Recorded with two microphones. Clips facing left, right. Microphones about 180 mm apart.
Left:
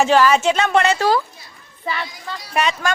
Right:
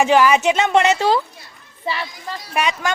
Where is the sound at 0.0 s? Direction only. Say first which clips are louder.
Even; 15° right (ahead or behind).